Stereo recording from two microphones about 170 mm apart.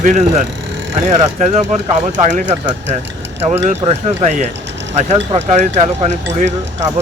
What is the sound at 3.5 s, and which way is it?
Speech, 40° right (ahead or behind).